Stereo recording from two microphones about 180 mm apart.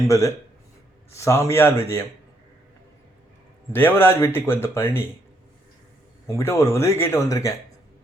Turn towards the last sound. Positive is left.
turn(degrees=20)  # may be behind; listen again after turning